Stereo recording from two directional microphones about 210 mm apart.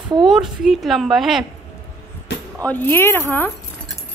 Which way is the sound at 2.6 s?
10° left (ahead or behind).